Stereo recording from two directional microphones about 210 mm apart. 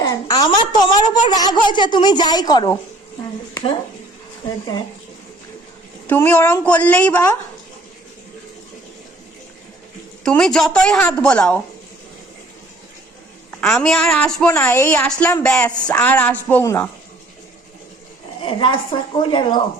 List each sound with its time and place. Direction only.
0.0 s a child's voice: 15° left (ahead or behind)
6.1 s speech: 10° left (ahead or behind)
10.2 s a woman's voice: 5° left (ahead or behind)
13.5 s a woman's voice: 5° left (ahead or behind)
18.4 s a child's voice: 25° left (ahead or behind)